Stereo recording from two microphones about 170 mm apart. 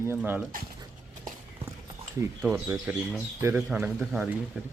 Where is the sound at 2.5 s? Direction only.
15° right (ahead or behind).